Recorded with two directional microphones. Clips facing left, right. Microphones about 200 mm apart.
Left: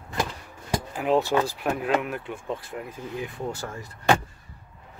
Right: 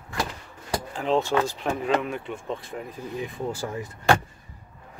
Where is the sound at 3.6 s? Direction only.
15° right (ahead or behind).